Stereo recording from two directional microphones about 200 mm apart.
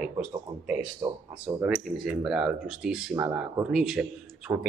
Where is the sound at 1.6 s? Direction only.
5° right (ahead or behind).